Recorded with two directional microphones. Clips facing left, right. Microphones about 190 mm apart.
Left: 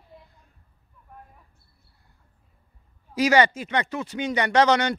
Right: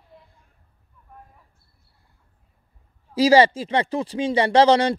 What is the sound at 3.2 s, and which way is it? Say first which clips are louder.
Speech: right 4 dB; 30° right (ahead or behind).